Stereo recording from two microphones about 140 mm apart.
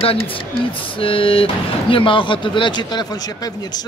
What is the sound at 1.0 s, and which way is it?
A man's voice, 40° left (ahead or behind).